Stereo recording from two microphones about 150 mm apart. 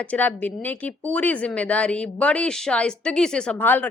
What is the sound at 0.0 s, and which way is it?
A woman's voice, 10° left (ahead or behind).